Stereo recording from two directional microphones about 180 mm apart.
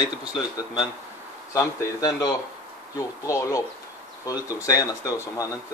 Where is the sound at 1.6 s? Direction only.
20° left (ahead or behind).